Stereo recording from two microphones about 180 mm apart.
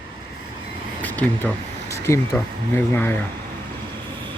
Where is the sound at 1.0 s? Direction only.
10° left (ahead or behind).